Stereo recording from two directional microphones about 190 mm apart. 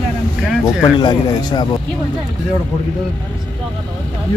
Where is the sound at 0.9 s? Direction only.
20° left (ahead or behind).